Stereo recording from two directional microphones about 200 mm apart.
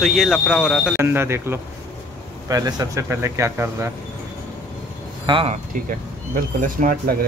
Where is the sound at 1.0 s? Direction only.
10° right (ahead or behind).